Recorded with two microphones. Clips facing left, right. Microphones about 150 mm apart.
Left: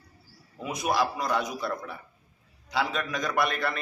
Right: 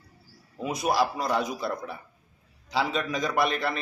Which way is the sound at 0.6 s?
35° right (ahead or behind).